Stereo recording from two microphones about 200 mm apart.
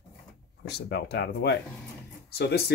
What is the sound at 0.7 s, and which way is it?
Speech, 55° left (ahead or behind).